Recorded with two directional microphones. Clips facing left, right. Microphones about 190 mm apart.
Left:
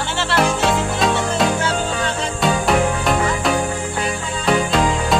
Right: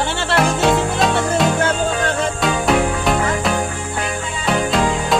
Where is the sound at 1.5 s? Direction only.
55° right (ahead or behind).